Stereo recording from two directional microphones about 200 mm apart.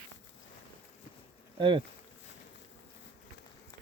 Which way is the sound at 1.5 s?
25° right (ahead or behind).